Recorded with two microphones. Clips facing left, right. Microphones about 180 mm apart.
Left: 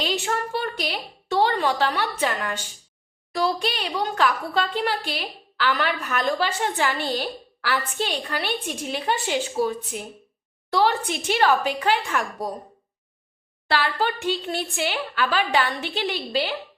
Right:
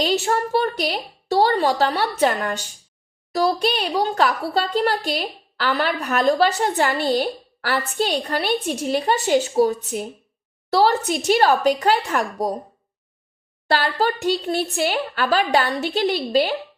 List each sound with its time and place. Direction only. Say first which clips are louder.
0.0 s a woman's voice: right 5 dB; 40° right (ahead or behind)
13.7 s a woman's voice: right 3 dB; 40° right (ahead or behind)